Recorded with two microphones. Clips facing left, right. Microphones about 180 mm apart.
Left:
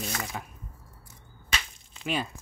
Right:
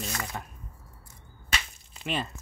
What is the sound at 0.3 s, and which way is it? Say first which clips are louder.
Speech: even; centre (ahead or behind).